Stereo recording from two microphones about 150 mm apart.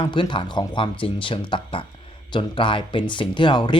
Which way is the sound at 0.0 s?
30° left (ahead or behind).